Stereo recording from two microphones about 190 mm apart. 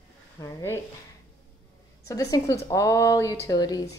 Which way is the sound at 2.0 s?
20° left (ahead or behind).